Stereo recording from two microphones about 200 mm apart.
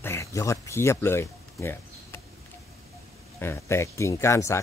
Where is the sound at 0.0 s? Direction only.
15° left (ahead or behind).